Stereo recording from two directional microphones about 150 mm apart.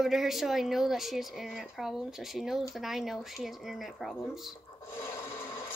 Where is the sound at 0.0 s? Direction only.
Centre (ahead or behind).